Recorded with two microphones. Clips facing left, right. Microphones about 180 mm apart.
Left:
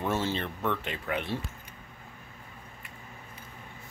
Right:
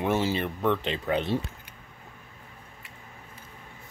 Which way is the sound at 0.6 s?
25° right (ahead or behind).